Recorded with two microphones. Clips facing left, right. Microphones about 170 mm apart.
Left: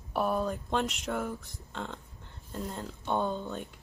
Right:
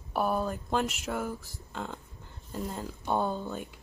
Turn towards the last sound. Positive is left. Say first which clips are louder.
# right 1 dB
turn(degrees=-5)  # may be behind; listen again after turning